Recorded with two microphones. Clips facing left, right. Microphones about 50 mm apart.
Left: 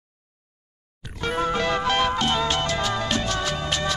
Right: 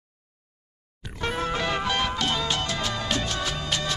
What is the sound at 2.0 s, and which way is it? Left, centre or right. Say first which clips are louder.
Music: left 4 dB; centre.